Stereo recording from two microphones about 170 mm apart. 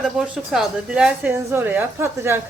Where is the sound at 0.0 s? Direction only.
5° right (ahead or behind).